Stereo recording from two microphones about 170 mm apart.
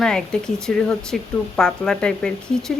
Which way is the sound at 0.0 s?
5° left (ahead or behind).